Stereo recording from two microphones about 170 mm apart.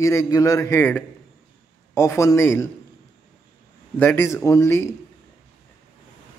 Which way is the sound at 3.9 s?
10° left (ahead or behind).